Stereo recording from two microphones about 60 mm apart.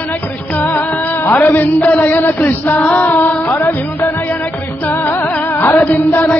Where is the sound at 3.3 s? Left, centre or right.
Left.